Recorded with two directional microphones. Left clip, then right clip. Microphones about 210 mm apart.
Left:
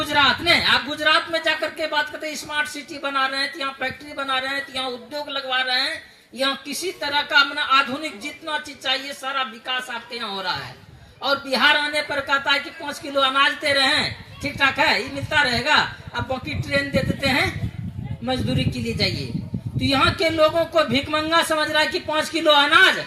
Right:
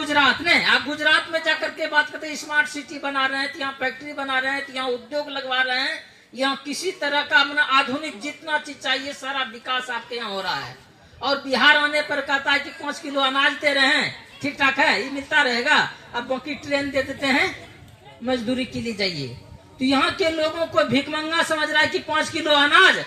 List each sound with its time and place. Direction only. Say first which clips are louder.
0.0 s speech: even; 40° left (ahead or behind)